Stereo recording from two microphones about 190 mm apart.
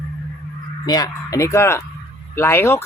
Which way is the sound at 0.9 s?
20° left (ahead or behind).